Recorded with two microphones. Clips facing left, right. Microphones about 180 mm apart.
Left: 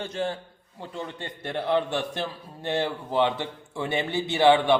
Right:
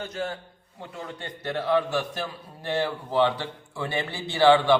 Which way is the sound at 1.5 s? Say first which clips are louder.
Right 1 dB; 25° left (ahead or behind).